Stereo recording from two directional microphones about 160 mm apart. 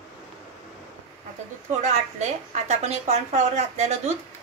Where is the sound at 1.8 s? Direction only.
45° right (ahead or behind).